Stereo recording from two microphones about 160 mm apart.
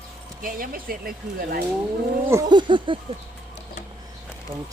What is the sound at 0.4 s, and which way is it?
Speech, 60° right (ahead or behind).